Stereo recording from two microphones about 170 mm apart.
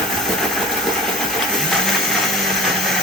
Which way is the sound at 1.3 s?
Centre (ahead or behind).